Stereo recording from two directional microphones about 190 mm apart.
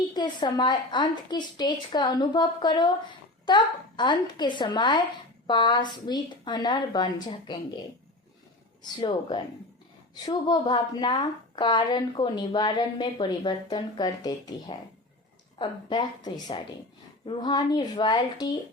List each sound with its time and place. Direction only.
0.1 s a woman's voice: 25° left (ahead or behind)
8.8 s a woman's voice: 25° left (ahead or behind)